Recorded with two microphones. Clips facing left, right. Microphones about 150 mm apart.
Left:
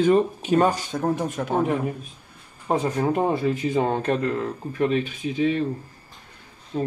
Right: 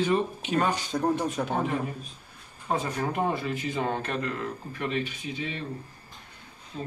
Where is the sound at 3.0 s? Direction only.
40° left (ahead or behind).